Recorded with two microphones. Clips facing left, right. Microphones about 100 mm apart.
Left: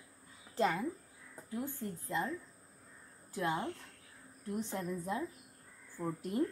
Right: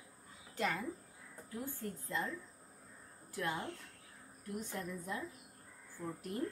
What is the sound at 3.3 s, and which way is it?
A woman's voice, 25° left (ahead or behind).